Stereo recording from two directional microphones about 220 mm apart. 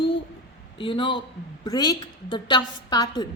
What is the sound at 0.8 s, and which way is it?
A woman's voice, 25° left (ahead or behind).